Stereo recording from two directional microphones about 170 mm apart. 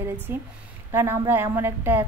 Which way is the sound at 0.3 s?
15° right (ahead or behind).